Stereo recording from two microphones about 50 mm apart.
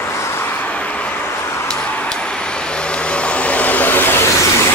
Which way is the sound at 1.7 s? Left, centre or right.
Centre.